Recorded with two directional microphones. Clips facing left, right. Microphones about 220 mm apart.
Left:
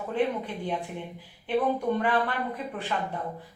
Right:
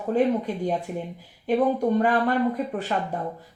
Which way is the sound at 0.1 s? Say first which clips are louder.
Right 6 dB; 40° right (ahead or behind).